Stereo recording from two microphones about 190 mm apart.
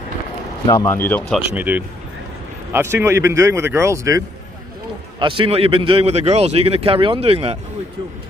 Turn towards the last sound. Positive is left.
turn(degrees=-30)  # may be behind; listen again after turning